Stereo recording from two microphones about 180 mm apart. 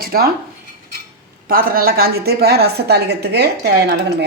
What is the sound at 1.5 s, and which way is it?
A woman's voice, 55° right (ahead or behind).